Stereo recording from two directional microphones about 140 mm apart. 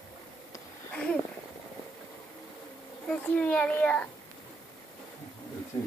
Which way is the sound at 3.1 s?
10° left (ahead or behind).